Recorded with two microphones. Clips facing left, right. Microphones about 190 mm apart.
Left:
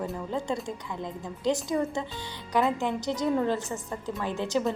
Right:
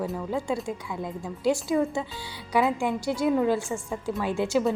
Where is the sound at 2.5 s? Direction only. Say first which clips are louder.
Right 2 dB; 10° right (ahead or behind).